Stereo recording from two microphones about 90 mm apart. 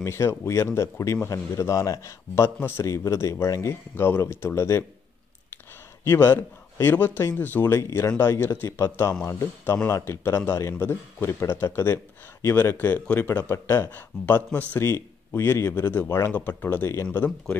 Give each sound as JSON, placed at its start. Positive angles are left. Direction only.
{"t": 0.0, "sound": "a man's voice", "side_deg": 30}
{"t": 6.0, "sound": "a man's voice", "side_deg": 25}
{"t": 9.1, "sound": "a man's voice", "side_deg": 15}
{"t": 14.8, "sound": "a man's voice", "side_deg": 30}